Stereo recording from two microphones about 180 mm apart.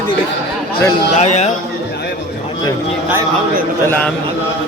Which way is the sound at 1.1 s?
40° left (ahead or behind).